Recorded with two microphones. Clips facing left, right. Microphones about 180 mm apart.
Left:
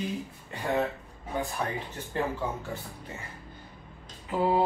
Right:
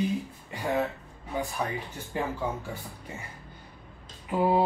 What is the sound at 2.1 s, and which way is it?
Speech, 15° right (ahead or behind).